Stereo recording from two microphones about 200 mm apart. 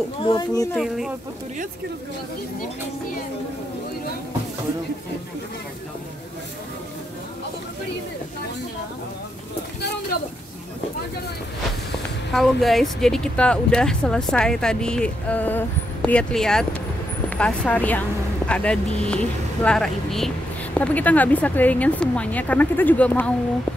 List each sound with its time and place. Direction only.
0.2 s speech: 20° left (ahead or behind)
0.7 s speech: centre (ahead or behind)
12.3 s speech: centre (ahead or behind)